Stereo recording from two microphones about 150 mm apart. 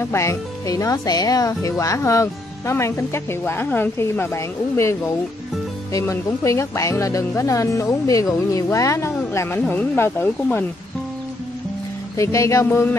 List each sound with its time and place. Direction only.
0.0 s speech: 20° left (ahead or behind)
12.2 s speech: 20° left (ahead or behind)